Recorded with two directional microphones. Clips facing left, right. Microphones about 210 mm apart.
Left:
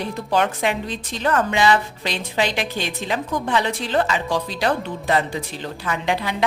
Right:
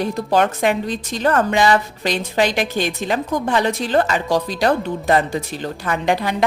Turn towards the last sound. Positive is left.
turn(degrees=-45)  # may be behind; listen again after turning